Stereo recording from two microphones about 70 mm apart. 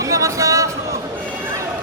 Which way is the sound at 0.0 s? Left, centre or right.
Right.